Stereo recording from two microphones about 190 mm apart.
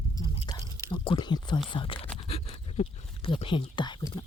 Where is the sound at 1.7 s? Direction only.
25° left (ahead or behind).